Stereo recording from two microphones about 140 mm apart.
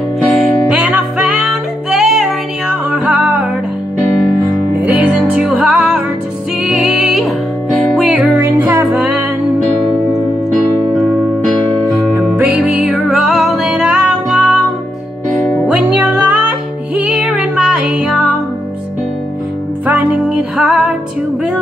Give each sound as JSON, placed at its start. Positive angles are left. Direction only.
{"t": 0.3, "sound": "music", "side_deg": -5}
{"t": 4.8, "sound": "music", "side_deg": -5}
{"t": 8.4, "sound": "music", "side_deg": -15}
{"t": 10.5, "sound": "electric piano", "side_deg": 5}
{"t": 12.4, "sound": "music", "side_deg": -10}
{"t": 19.9, "sound": "music", "side_deg": -10}